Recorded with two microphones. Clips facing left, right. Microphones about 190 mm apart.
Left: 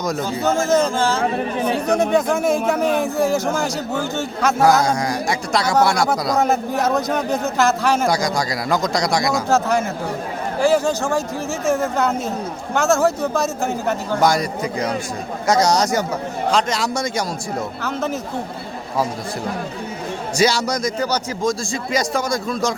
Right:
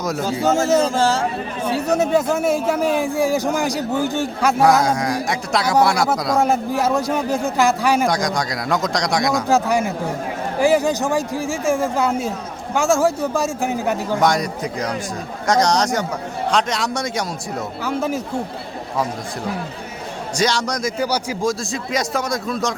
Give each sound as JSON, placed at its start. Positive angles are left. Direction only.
{"t": 0.0, "sound": "speech", "side_deg": -5}
{"t": 0.3, "sound": "a man's voice", "side_deg": -40}
{"t": 1.7, "sound": "speech", "side_deg": -5}
{"t": 4.6, "sound": "speech", "side_deg": 0}
{"t": 8.0, "sound": "speech", "side_deg": 0}
{"t": 9.5, "sound": "speech", "side_deg": -15}
{"t": 14.2, "sound": "speech", "side_deg": 0}
{"t": 17.8, "sound": "speech", "side_deg": -10}
{"t": 20.3, "sound": "speech", "side_deg": 5}
{"t": 21.0, "sound": "speech", "side_deg": -10}